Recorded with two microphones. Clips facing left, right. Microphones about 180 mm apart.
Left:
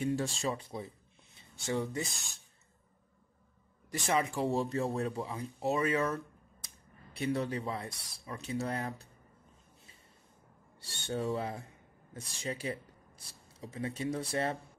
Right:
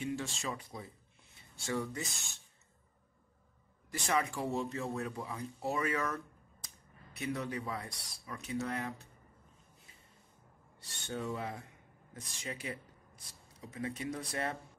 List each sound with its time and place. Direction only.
0.0 s speech: 35° left (ahead or behind)
4.1 s speech: 25° left (ahead or behind)
10.8 s speech: 30° left (ahead or behind)